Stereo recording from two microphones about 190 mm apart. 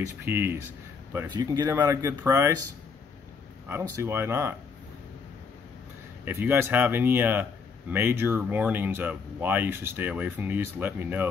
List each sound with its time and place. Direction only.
0.0 s speech: 10° right (ahead or behind)
1.3 s speech: 20° right (ahead or behind)
3.6 s speech: 15° right (ahead or behind)
6.2 s speech: 10° right (ahead or behind)